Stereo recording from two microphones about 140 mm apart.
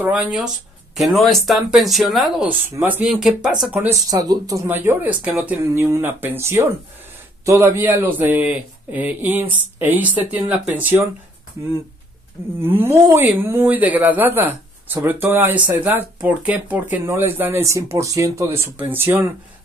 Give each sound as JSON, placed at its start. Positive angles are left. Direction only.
{"t": 0.0, "sound": "speech", "side_deg": -10}
{"t": 2.7, "sound": "speech", "side_deg": -15}
{"t": 3.1, "sound": "speech", "side_deg": -5}
{"t": 3.7, "sound": "speech", "side_deg": -15}
{"t": 4.0, "sound": "speech", "side_deg": -25}
{"t": 4.6, "sound": "speech", "side_deg": -15}
{"t": 12.6, "sound": "speech", "side_deg": -15}